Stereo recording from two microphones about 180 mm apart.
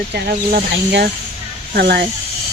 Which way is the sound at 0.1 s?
60° right (ahead or behind).